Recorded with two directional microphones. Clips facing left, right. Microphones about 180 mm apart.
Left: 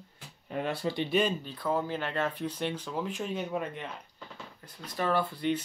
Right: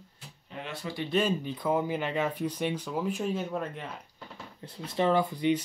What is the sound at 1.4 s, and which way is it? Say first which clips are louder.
Speech: right 3 dB; 15° right (ahead or behind).